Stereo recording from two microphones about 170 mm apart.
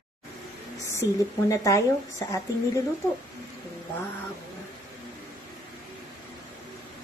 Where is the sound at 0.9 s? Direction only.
15° left (ahead or behind).